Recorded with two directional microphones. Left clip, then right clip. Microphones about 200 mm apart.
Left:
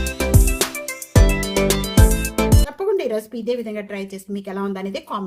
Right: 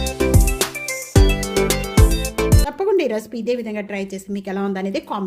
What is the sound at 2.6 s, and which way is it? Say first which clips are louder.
Speech: right 3 dB; 40° right (ahead or behind).